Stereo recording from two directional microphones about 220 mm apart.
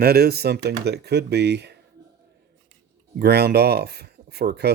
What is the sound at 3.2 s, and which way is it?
Speech, 45° right (ahead or behind).